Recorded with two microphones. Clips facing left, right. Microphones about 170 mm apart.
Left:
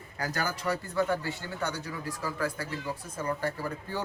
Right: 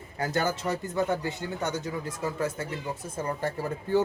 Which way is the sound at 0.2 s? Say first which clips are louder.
Right 5 dB; 25° right (ahead or behind).